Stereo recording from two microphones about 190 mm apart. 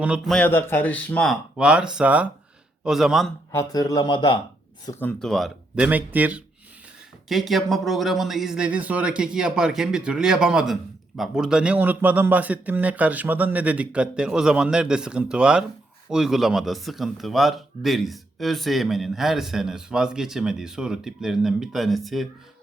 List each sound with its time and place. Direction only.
0.0 s a man's voice: 5° right (ahead or behind)
0.3 s speech: 10° left (ahead or behind)
3.5 s speech: 20° left (ahead or behind)
4.9 s a man's voice: 10° left (ahead or behind)